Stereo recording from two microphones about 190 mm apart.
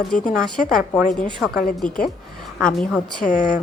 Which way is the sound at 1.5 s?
55° left (ahead or behind).